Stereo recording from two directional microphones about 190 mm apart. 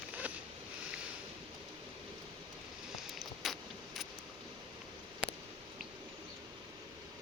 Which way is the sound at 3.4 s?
Centre (ahead or behind).